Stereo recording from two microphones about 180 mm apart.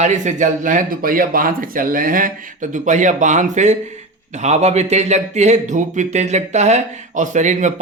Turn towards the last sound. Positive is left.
turn(degrees=-40)  # may be behind; listen again after turning